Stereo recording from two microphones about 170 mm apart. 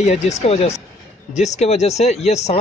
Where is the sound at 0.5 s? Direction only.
35° left (ahead or behind).